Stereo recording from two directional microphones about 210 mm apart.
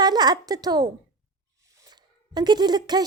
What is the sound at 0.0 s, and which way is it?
A woman's voice, 20° right (ahead or behind).